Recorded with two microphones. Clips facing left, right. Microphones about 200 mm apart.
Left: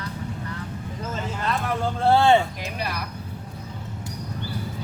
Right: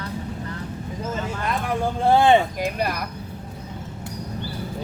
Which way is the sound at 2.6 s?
50° right (ahead or behind).